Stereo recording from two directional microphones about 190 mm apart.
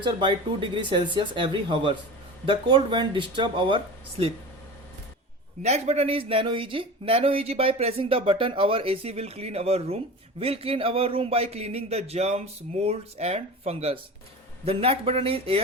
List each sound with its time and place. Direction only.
0.0 s speech: 25° right (ahead or behind)
5.6 s speech: 35° right (ahead or behind)